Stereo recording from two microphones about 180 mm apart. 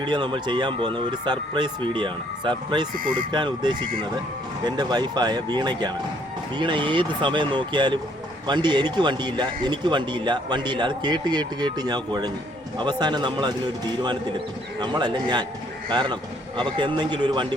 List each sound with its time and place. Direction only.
0.0 s speech: 25° right (ahead or behind)
14.8 s speech: 25° right (ahead or behind)